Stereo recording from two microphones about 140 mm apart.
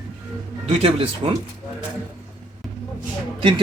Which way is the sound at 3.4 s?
35° right (ahead or behind).